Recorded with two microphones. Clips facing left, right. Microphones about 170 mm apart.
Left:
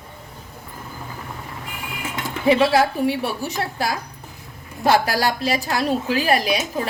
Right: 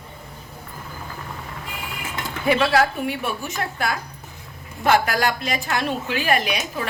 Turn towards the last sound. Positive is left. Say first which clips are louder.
# left 3 dB
turn(degrees=35)  # may be behind; listen again after turning